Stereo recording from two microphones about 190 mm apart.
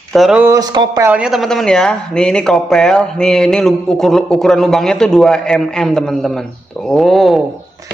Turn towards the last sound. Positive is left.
turn(degrees=0)  # may be behind; listen again after turning